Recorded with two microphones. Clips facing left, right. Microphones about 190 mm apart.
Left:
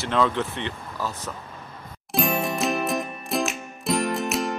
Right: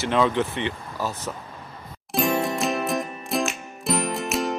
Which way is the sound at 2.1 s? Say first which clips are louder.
Right 2 dB; centre (ahead or behind).